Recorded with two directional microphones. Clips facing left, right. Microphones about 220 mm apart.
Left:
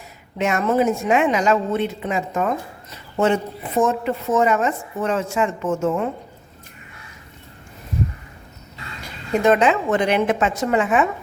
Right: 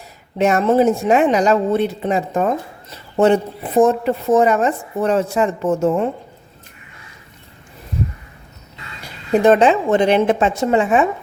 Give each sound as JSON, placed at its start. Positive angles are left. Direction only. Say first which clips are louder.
{"t": 0.3, "sound": "speech", "louder": "right 5 dB", "side_deg": -35}
{"t": 9.3, "sound": "a woman's voice", "louder": "right 4 dB", "side_deg": -30}